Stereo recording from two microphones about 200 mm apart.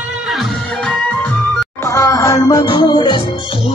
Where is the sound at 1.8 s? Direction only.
15° left (ahead or behind).